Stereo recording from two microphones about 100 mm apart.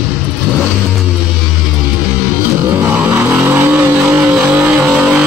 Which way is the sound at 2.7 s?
20° right (ahead or behind).